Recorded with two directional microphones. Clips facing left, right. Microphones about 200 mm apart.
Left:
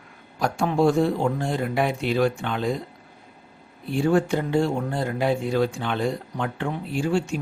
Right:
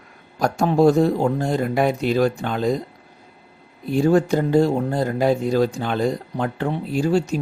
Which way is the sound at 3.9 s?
40° right (ahead or behind).